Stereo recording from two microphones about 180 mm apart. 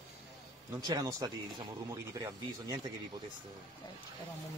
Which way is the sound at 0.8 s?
20° right (ahead or behind).